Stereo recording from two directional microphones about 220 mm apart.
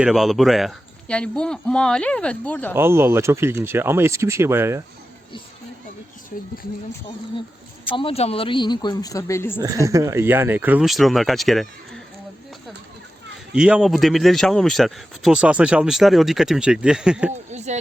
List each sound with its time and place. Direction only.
0.0 s speech: centre (ahead or behind)
2.7 s speech: 10° right (ahead or behind)
6.3 s speech: 40° left (ahead or behind)
7.9 s speech: 25° left (ahead or behind)
9.8 s speech: 15° right (ahead or behind); by 12.0 s centre (ahead or behind)
13.5 s speech: 5° right (ahead or behind)
17.5 s a sound: 30° right (ahead or behind)